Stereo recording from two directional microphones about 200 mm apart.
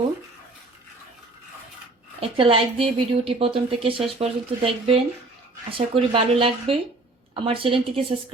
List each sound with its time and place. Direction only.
2.2 s speech: 25° right (ahead or behind)